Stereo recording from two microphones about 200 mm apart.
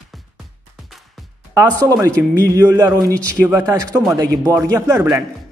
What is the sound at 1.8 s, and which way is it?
A man's voice, 15° right (ahead or behind).